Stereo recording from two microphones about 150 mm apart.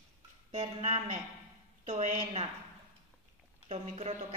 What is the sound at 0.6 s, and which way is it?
Speech, 40° right (ahead or behind).